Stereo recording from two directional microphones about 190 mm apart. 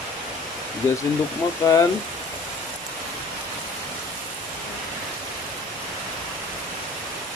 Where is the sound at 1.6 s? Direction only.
15° left (ahead or behind).